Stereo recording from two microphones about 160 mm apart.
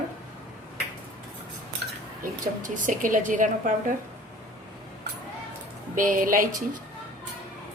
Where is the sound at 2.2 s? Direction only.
55° right (ahead or behind).